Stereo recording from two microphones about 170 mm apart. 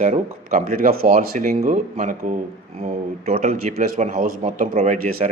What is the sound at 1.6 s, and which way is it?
Speech, 45° right (ahead or behind).